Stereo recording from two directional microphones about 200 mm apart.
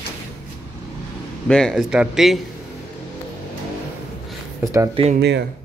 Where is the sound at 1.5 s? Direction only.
Centre (ahead or behind).